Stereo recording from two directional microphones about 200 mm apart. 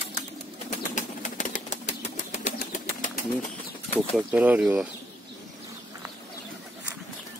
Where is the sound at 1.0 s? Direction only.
40° left (ahead or behind).